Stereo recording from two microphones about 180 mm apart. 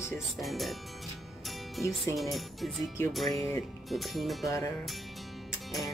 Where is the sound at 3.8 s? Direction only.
Centre (ahead or behind).